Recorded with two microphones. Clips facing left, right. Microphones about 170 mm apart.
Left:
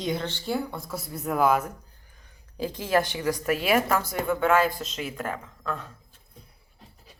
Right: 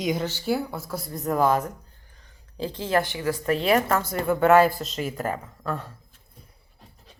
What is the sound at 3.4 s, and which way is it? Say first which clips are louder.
Speech: right 3 dB; 5° left (ahead or behind).